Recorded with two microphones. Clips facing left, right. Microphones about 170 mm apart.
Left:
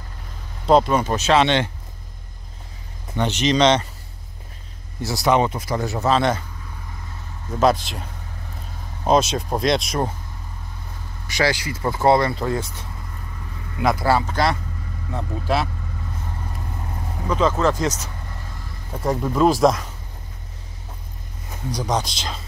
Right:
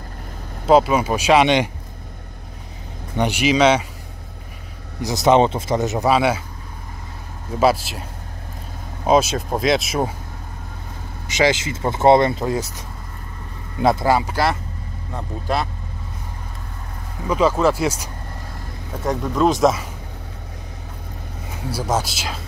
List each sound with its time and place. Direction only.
0.7 s speech: 5° right (ahead or behind)
3.2 s speech: 10° right (ahead or behind)
5.0 s speech: 20° right (ahead or behind)
7.5 s speech: 5° right (ahead or behind)
11.2 s speech: 20° right (ahead or behind)
13.7 s speech: 30° right (ahead or behind)
14.0 s speech: 10° right (ahead or behind)
17.3 s speech: 10° right (ahead or behind)
19.0 s speech: 5° left (ahead or behind)
21.6 s speech: 5° right (ahead or behind)